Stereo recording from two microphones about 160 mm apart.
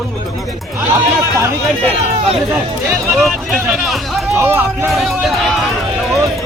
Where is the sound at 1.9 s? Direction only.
35° right (ahead or behind).